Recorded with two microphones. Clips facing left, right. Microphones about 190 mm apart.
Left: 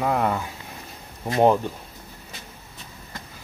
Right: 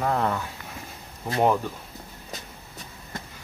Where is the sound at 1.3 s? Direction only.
25° left (ahead or behind).